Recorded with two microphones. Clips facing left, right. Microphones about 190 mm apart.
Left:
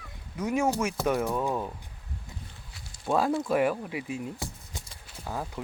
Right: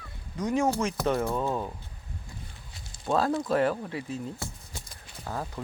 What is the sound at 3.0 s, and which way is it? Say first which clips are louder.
Speech: even; 10° left (ahead or behind).